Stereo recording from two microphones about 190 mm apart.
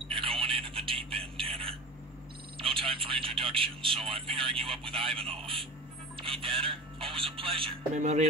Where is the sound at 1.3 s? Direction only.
30° right (ahead or behind).